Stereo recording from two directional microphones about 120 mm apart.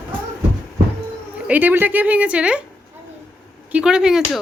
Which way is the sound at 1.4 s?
15° right (ahead or behind).